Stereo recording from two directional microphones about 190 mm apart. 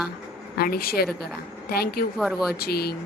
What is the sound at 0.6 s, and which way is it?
A woman's voice, 55° left (ahead or behind).